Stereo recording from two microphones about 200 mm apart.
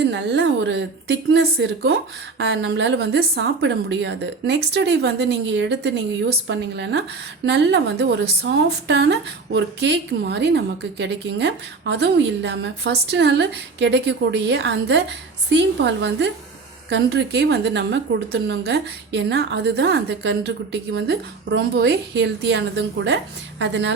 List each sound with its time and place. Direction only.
0.0 s a woman's voice: 60° right (ahead or behind)